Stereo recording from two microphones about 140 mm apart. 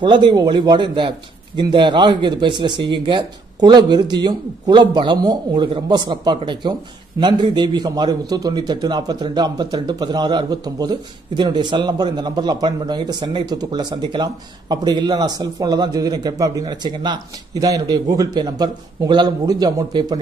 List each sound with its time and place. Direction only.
0.0 s a man's voice: 35° right (ahead or behind)